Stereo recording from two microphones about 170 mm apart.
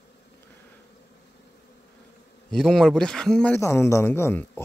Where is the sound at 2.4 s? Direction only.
5° left (ahead or behind).